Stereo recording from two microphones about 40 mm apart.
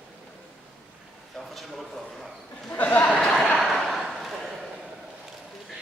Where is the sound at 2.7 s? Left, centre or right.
Left.